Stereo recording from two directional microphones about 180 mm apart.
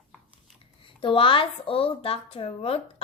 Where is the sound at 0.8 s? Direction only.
30° left (ahead or behind).